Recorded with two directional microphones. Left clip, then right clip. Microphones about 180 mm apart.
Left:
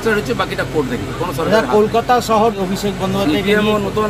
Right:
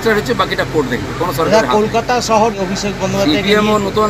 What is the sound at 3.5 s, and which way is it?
Speech, 5° left (ahead or behind).